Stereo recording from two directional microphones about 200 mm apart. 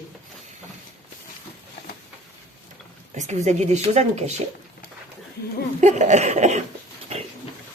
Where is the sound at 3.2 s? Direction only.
35° right (ahead or behind).